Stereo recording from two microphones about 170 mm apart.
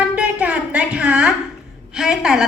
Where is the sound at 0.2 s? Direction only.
5° right (ahead or behind).